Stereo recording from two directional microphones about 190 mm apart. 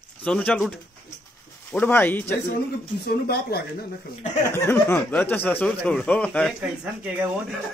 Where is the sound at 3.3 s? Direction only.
55° left (ahead or behind).